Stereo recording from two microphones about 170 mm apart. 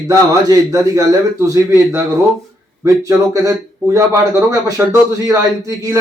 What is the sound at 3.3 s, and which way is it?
A man's voice, 20° right (ahead or behind).